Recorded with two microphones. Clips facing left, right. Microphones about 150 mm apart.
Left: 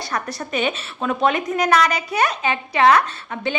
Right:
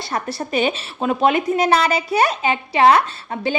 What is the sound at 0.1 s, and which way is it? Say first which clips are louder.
A child's voice: right 4 dB; 30° right (ahead or behind).